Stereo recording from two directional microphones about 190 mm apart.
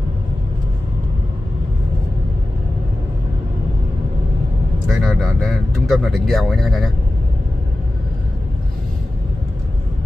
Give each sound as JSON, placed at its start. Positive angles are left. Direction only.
{"t": 4.8, "sound": "speech", "side_deg": 0}